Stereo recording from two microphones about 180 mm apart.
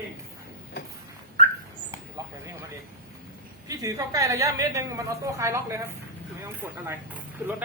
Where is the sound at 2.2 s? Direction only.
20° right (ahead or behind).